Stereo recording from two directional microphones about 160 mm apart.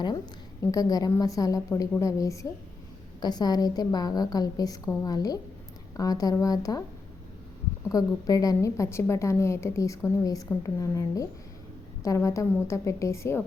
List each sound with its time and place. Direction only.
0.6 s a woman's voice: 20° left (ahead or behind)
7.9 s a woman's voice: 20° left (ahead or behind)